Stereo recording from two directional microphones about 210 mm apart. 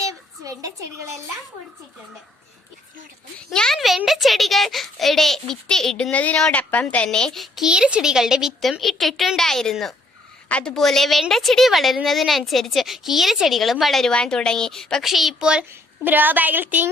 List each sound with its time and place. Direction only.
0.1 s a child's voice: 15° right (ahead or behind)
3.5 s a child's voice: centre (ahead or behind)